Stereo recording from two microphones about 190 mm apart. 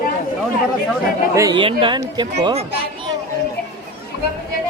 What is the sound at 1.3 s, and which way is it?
Speech, 20° right (ahead or behind).